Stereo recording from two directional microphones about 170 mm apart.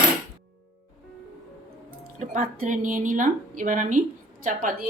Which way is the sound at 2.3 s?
50° right (ahead or behind).